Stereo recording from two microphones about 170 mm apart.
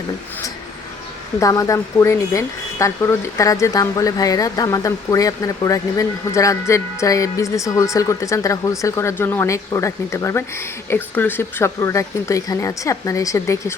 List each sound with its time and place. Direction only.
1.4 s speech: 20° left (ahead or behind)